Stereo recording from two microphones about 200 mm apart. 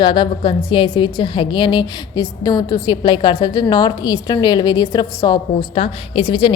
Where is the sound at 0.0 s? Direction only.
25° left (ahead or behind).